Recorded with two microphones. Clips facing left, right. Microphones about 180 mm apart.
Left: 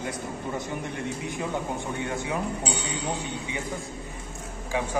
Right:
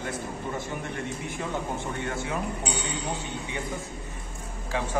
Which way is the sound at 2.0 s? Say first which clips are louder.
Left 2 dB; 15° left (ahead or behind).